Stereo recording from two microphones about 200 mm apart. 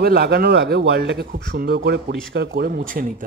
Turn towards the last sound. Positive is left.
turn(degrees=-45)  # may be behind; listen again after turning